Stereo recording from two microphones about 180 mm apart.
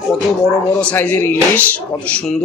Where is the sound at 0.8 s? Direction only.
10° left (ahead or behind).